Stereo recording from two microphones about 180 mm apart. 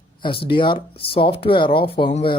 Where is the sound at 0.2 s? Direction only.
30° left (ahead or behind).